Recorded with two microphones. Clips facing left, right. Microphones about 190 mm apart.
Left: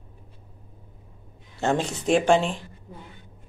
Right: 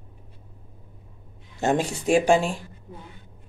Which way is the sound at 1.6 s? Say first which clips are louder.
Right 1 dB; 15° right (ahead or behind).